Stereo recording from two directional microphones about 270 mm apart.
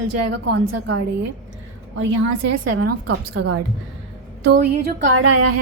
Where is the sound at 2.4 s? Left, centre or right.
Right.